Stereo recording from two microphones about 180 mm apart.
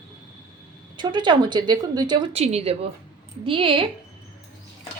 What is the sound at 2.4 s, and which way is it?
A woman's voice, 35° right (ahead or behind).